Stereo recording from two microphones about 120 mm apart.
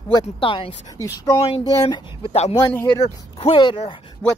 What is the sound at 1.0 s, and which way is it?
Speech, 25° left (ahead or behind).